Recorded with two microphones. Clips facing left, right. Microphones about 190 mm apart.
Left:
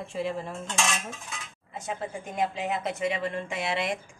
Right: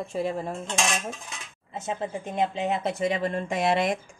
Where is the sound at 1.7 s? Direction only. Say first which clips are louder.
Right 3 dB; 25° right (ahead or behind).